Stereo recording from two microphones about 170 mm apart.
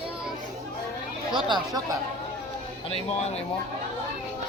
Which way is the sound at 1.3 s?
25° right (ahead or behind).